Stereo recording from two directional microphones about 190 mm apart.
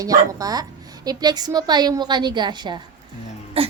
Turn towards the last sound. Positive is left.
turn(degrees=-30)  # may be behind; listen again after turning